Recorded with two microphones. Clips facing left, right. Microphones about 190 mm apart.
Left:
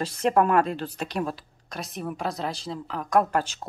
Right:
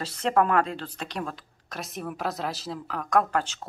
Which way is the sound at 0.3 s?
20° left (ahead or behind).